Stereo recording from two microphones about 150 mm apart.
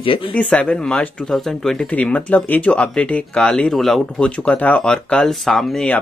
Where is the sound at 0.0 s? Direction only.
35° left (ahead or behind).